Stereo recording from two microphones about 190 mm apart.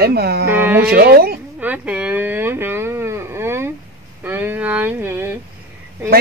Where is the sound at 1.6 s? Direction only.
10° right (ahead or behind).